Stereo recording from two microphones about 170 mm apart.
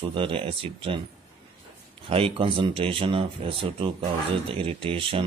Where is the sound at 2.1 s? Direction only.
35° right (ahead or behind).